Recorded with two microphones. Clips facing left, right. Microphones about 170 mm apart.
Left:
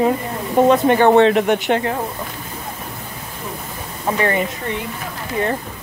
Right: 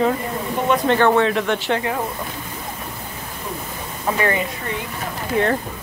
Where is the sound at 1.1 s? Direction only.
25° left (ahead or behind).